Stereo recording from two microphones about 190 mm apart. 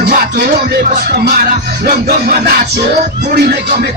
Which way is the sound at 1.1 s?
55° right (ahead or behind).